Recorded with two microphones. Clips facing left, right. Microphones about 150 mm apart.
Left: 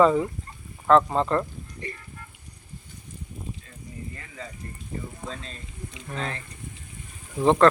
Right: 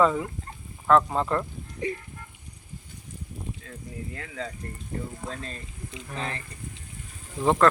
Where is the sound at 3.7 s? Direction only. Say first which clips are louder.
Right 2 dB; 80° right.